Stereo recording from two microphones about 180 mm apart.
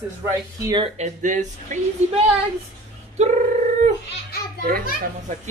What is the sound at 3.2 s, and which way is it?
Speech, 40° right (ahead or behind).